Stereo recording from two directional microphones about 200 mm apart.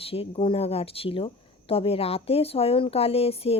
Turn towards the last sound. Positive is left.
turn(degrees=30)  # may be behind; listen again after turning